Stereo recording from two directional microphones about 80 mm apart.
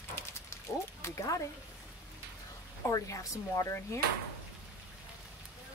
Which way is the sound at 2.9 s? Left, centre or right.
Left.